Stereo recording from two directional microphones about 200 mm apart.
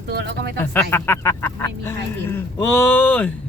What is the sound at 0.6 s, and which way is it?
Speech, 10° left (ahead or behind).